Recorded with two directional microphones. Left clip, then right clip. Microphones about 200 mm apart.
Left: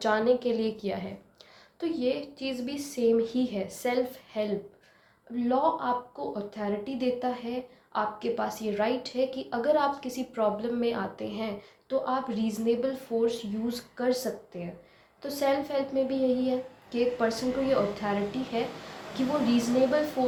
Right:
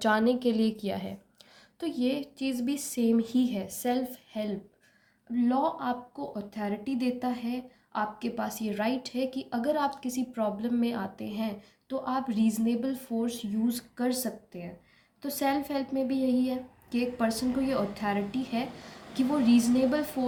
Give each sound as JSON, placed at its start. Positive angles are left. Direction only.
{"t": 0.0, "sound": "a woman's voice", "side_deg": -50}
{"t": 5.4, "sound": "a woman's voice", "side_deg": -45}
{"t": 15.2, "sound": "a woman's voice", "side_deg": -40}